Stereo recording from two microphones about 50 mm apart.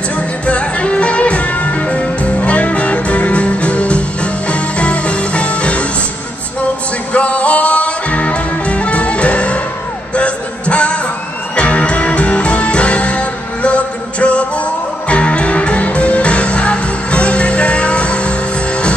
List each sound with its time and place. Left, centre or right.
0.5 s music: left
7.2 s music: left
10.1 s a sound: left
11.5 s music: left